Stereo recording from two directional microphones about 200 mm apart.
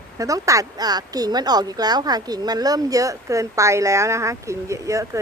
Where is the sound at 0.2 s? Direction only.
15° right (ahead or behind).